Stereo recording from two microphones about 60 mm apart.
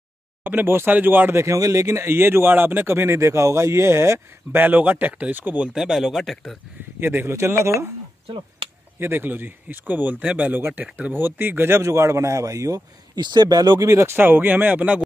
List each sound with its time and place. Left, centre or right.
0.4 s speech: right
1.3 s speech: right
4.6 s speech: right
5.7 s speech: centre
7.0 s speech: right
7.3 s speech: right
9.0 s speech: right
11.8 s speech: right
13.9 s speech: right